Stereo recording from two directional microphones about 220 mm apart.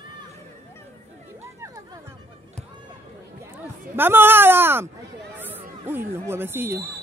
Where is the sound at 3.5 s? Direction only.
10° right (ahead or behind).